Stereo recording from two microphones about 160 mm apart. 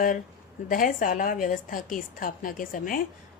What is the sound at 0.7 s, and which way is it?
A woman's voice, 60° left (ahead or behind).